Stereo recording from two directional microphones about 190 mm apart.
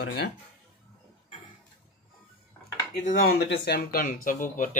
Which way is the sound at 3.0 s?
50° left (ahead or behind).